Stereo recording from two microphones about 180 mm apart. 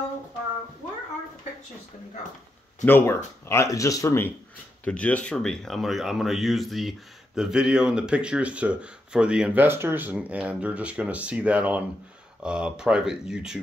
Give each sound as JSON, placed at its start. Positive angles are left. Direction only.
{"t": 2.8, "sound": "speech", "side_deg": 10}